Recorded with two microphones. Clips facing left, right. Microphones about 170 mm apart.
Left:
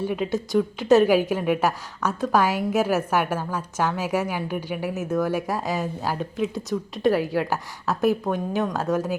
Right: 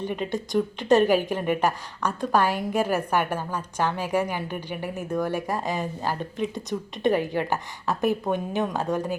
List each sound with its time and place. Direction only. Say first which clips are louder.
0.0 s a woman's voice: left 3 dB; 5° left (ahead or behind)